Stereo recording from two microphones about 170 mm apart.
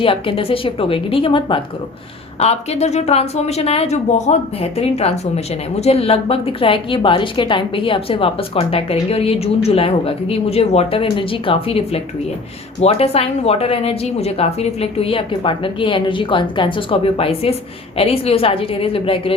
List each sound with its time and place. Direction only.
0.0 s speech: 30° left (ahead or behind)